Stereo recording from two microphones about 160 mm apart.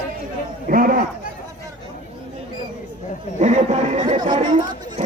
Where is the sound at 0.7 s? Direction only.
60° right (ahead or behind).